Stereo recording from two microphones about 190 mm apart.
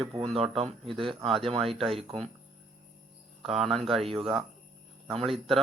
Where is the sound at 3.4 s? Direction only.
Centre (ahead or behind).